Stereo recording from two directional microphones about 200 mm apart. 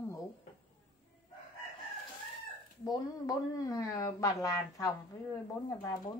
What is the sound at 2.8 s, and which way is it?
Speech, 20° left (ahead or behind).